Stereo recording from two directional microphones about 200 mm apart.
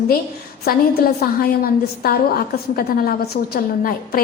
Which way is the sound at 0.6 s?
50° left (ahead or behind).